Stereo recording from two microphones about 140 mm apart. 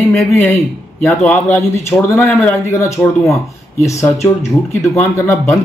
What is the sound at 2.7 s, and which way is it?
Speech, 20° left (ahead or behind).